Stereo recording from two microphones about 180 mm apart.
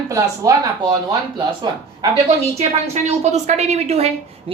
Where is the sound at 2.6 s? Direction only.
40° right (ahead or behind).